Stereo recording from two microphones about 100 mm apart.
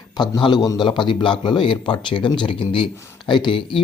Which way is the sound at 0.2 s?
50° left (ahead or behind).